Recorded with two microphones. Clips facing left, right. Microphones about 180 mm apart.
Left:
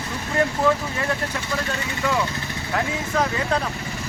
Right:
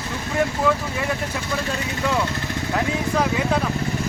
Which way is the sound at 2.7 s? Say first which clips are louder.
Right 1 dB; 10° right (ahead or behind).